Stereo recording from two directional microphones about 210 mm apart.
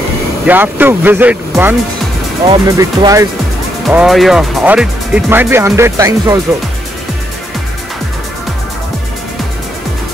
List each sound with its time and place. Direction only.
0.5 s speech: 10° right (ahead or behind)
2.4 s speech: 25° right (ahead or behind)
3.8 s speech: centre (ahead or behind)